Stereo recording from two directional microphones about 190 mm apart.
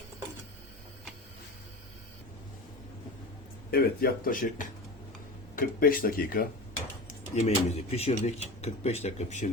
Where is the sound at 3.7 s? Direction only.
55° left (ahead or behind).